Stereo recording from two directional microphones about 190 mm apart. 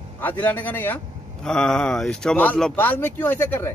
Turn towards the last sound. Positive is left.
turn(degrees=10)  # may be behind; listen again after turning